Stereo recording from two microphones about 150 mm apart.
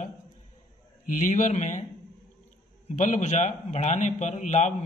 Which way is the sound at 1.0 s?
55° left (ahead or behind).